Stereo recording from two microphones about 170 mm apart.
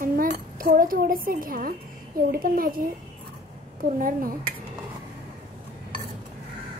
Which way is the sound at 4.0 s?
55° right (ahead or behind).